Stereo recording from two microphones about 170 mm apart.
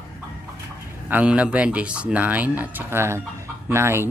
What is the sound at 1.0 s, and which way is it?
Speech, 10° right (ahead or behind).